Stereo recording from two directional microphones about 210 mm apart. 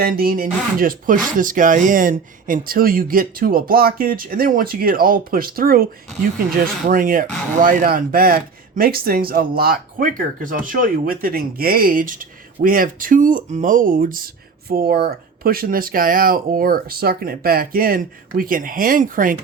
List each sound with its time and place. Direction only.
0.0 s speech: 45° right (ahead or behind)